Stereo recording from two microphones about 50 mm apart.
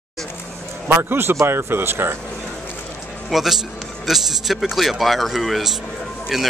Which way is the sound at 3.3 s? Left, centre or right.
Centre.